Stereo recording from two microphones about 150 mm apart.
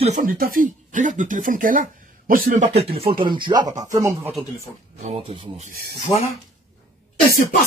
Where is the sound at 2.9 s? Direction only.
35° right (ahead or behind).